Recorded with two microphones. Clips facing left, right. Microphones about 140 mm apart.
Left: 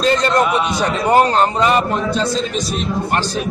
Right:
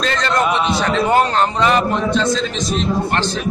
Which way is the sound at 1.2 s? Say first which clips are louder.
Left 2 dB; 40° left (ahead or behind).